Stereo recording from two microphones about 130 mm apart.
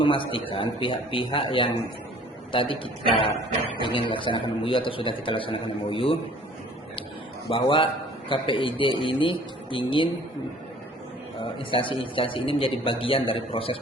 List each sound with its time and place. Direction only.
0.0 s a man's voice: 40° left (ahead or behind)
7.5 s a man's voice: 45° left (ahead or behind)
11.7 s a man's voice: 40° left (ahead or behind)